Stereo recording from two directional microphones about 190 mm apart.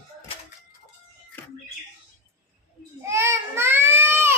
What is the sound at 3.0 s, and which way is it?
Baby cry, 15° right (ahead or behind).